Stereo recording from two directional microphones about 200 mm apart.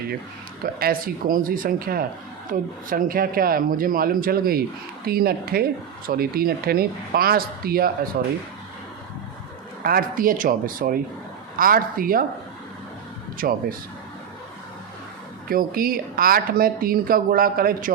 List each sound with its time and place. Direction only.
0.6 s speech: 45° right (ahead or behind)
9.8 s speech: 45° right (ahead or behind)
13.4 s speech: 50° right (ahead or behind)
15.4 s speech: 45° right (ahead or behind)